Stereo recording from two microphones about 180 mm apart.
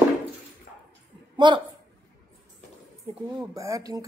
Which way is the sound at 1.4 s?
25° right (ahead or behind).